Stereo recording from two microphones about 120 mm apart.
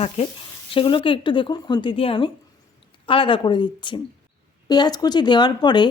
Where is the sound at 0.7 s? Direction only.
45° left (ahead or behind).